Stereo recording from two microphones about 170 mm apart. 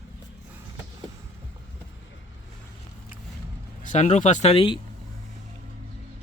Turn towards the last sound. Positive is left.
turn(degrees=30)  # may be behind; listen again after turning